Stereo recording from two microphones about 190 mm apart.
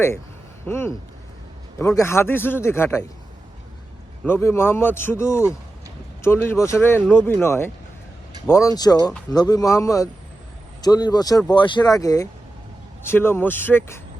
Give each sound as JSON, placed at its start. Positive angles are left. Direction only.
{"t": 0.6, "sound": "speech", "side_deg": 10}
{"t": 2.0, "sound": "speech", "side_deg": 15}
{"t": 4.2, "sound": "speech", "side_deg": 10}